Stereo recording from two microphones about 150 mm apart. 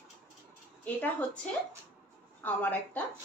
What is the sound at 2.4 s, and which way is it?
Speech, 10° left (ahead or behind).